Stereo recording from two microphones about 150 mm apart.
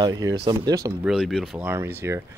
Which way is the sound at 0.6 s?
20° right (ahead or behind).